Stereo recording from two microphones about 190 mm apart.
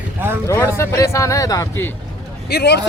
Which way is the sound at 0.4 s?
15° left (ahead or behind).